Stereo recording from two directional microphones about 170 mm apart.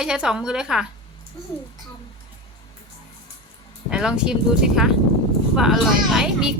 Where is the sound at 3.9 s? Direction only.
5° right (ahead or behind).